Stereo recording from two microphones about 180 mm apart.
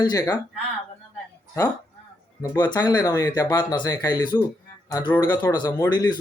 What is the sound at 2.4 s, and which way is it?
Speech, 20° left (ahead or behind).